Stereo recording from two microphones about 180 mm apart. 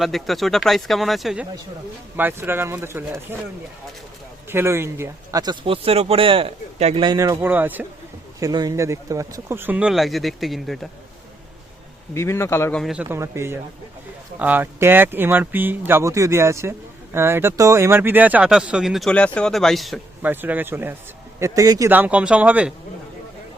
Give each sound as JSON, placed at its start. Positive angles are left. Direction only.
{"t": 0.0, "sound": "speech", "side_deg": 0}
{"t": 12.1, "sound": "a man's voice", "side_deg": 15}
{"t": 12.8, "sound": "speech", "side_deg": -5}
{"t": 20.3, "sound": "speech", "side_deg": -10}